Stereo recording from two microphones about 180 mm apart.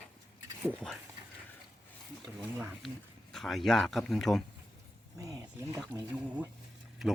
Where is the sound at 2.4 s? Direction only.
5° right (ahead or behind).